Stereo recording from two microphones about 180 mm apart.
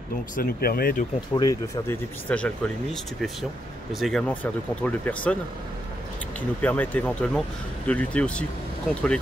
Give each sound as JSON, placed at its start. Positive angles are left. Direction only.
{"t": 0.4, "sound": "speech", "side_deg": 60}
{"t": 1.3, "sound": "speech", "side_deg": 20}
{"t": 2.2, "sound": "speech", "side_deg": 5}
{"t": 6.6, "sound": "speech", "side_deg": 10}